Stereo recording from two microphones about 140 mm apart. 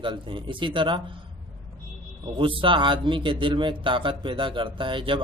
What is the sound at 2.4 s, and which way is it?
Speech, 40° right (ahead or behind).